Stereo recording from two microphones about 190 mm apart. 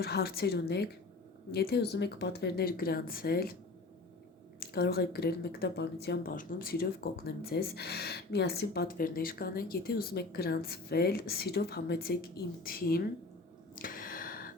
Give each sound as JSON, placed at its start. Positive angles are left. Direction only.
{"t": 0.0, "sound": "speech", "side_deg": 55}
{"t": 4.6, "sound": "speech", "side_deg": 55}
{"t": 13.8, "sound": "gasp", "side_deg": 50}